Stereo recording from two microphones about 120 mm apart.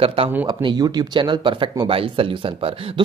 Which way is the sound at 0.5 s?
40° right (ahead or behind).